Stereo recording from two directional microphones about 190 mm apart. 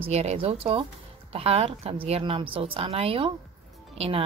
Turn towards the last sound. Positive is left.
turn(degrees=-30)  # may be behind; listen again after turning